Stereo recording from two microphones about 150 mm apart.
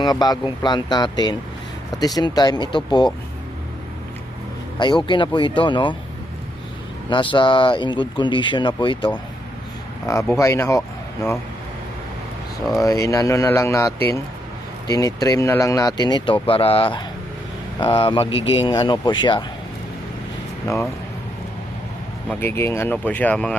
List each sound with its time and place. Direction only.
0.0 s speech: 25° left (ahead or behind)
4.8 s speech: 30° left (ahead or behind)
7.1 s speech: 35° left (ahead or behind)
10.1 s speech: 20° left (ahead or behind)
12.8 s speech: 20° left (ahead or behind)
22.3 s speech: 15° left (ahead or behind)